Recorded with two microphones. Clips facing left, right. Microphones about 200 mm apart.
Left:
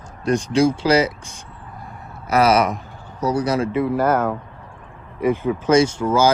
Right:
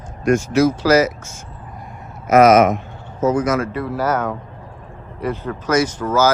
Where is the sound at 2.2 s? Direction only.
35° left (ahead or behind).